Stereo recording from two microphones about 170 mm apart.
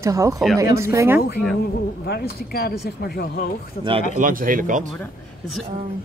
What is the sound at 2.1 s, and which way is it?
Speech, 65° left (ahead or behind).